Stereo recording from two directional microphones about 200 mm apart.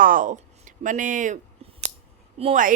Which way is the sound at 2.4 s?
30° right (ahead or behind).